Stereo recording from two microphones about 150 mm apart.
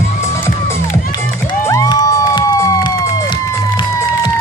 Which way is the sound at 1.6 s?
25° left (ahead or behind).